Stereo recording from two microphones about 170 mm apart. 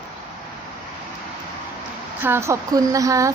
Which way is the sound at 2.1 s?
10° right (ahead or behind).